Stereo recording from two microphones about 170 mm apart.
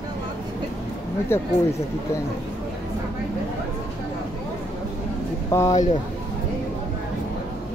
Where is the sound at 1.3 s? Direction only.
15° left (ahead or behind).